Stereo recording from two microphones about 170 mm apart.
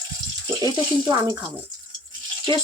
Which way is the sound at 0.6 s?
20° right (ahead or behind).